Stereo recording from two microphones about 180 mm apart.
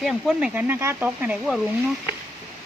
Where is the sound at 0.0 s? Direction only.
Centre (ahead or behind).